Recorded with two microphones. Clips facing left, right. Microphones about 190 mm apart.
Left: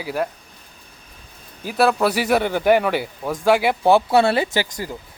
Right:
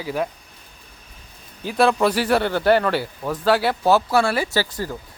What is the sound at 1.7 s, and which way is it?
A man's voice, 5° left (ahead or behind).